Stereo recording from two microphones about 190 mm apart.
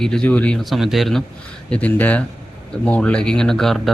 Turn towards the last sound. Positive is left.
turn(degrees=0)  # may be behind; listen again after turning